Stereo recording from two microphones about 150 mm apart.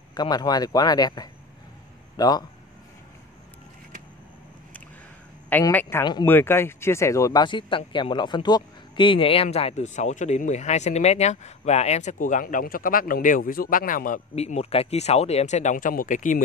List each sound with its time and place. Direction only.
0.1 s speech: 30° left (ahead or behind)
5.5 s speech: 10° left (ahead or behind); by 14.2 s 65° left (ahead or behind)
14.3 s speech: 45° left (ahead or behind)